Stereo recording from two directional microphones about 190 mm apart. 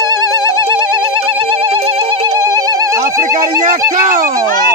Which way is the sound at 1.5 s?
30° right (ahead or behind).